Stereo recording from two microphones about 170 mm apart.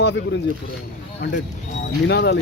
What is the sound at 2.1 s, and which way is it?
Speech, 80° left.